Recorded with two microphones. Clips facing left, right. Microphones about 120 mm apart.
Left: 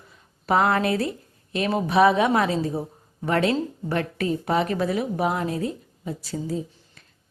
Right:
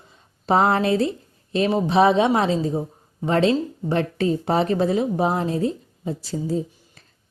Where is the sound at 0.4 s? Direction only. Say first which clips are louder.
Right 2 dB; 30° right (ahead or behind).